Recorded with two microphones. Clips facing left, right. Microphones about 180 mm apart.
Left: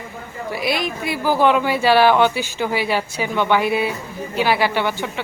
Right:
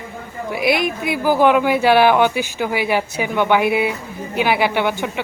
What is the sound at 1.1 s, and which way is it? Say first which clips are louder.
Speech: right 2 dB; 15° right (ahead or behind).